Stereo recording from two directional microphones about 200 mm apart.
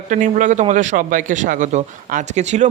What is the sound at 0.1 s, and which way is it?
Speech, 40° right (ahead or behind).